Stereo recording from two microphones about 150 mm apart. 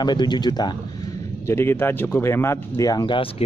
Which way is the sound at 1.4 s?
15° left (ahead or behind).